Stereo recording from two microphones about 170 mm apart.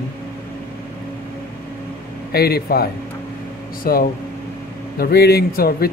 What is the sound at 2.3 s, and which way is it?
Speech, 65° left (ahead or behind).